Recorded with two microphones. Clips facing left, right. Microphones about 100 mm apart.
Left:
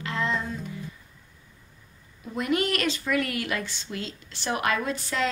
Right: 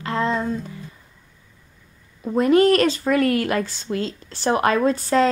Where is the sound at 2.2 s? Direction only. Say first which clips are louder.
Right 11 dB; 35° right (ahead or behind).